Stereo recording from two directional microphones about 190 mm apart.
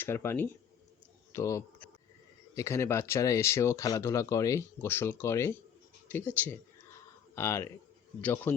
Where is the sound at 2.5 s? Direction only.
15° left (ahead or behind).